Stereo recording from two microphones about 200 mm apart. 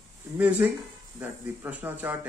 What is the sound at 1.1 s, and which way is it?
Speech, 10° right (ahead or behind).